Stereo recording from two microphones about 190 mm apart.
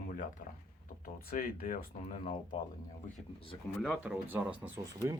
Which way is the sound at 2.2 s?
30° left (ahead or behind).